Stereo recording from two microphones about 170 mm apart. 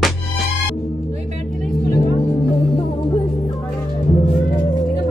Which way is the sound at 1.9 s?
30° left (ahead or behind).